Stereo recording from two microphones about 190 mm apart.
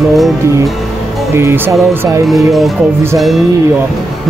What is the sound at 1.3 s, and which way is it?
Speech, 15° right (ahead or behind).